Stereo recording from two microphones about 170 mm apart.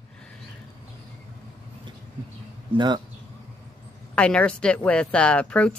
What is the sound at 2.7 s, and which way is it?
Speech, 25° right (ahead or behind).